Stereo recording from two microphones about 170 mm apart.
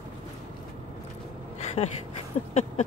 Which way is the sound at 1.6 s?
35° left (ahead or behind).